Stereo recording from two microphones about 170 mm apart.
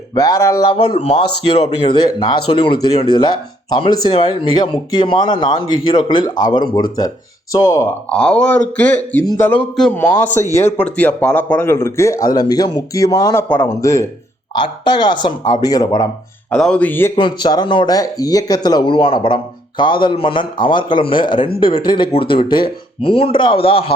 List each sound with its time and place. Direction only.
0.1 s speech: 20° left (ahead or behind)
8.1 s speech: 5° left (ahead or behind)
16.5 s speech: 5° left (ahead or behind)
17.2 s speech: 25° left (ahead or behind)